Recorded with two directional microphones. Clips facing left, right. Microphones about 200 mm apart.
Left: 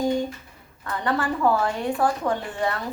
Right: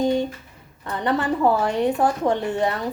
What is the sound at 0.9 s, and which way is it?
Speech, 20° right (ahead or behind).